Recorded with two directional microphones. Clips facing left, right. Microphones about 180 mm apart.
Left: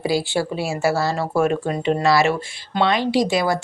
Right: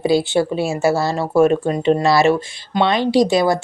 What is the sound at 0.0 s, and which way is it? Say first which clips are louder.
Speech: right 5 dB; 20° right (ahead or behind).